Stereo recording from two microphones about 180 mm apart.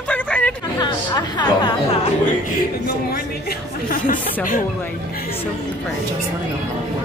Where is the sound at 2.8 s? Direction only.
60° left (ahead or behind).